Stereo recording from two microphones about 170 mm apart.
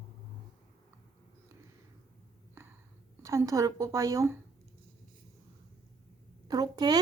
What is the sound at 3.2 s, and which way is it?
Speech, 20° right (ahead or behind).